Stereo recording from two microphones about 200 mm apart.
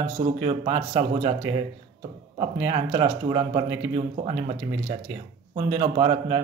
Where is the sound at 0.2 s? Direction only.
30° right (ahead or behind).